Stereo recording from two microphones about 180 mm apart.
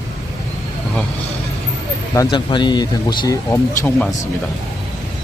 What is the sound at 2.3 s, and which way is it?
Speech, 25° left (ahead or behind).